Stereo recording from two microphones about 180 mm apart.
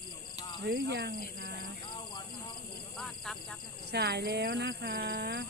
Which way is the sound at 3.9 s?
65° right (ahead or behind).